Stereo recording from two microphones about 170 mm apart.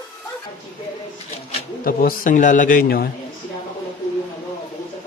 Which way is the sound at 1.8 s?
55° left (ahead or behind).